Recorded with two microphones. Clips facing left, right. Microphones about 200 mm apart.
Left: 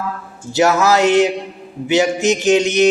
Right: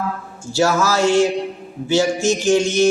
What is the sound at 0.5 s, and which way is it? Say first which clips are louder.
Speech: left 3 dB; 20° left (ahead or behind).